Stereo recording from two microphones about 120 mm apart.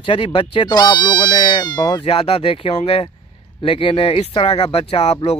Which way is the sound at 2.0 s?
60° left (ahead or behind).